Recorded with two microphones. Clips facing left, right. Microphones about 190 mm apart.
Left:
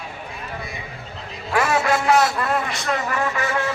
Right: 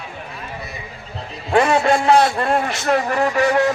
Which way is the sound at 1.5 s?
25° right (ahead or behind).